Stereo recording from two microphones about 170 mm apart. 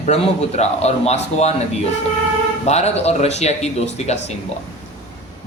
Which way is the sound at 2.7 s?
40° left (ahead or behind).